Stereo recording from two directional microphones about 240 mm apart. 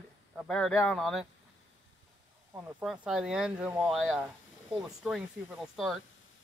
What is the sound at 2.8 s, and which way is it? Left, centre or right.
Speech, centre.